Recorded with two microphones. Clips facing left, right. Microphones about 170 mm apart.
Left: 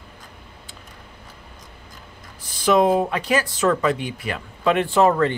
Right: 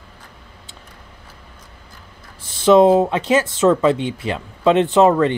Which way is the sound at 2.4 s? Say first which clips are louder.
Right 6 dB; 25° right (ahead or behind).